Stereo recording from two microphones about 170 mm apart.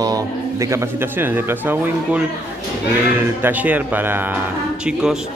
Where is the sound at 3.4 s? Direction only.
10° right (ahead or behind).